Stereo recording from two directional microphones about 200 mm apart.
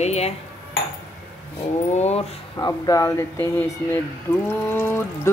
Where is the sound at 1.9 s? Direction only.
30° left (ahead or behind).